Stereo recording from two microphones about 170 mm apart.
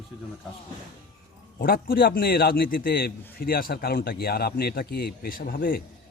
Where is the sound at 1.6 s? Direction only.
60° left (ahead or behind).